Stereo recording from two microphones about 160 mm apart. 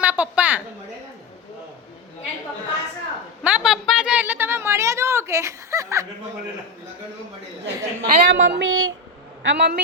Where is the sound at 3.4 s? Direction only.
5° right (ahead or behind).